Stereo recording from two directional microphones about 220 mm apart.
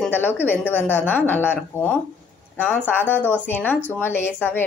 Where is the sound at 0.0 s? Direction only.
10° left (ahead or behind).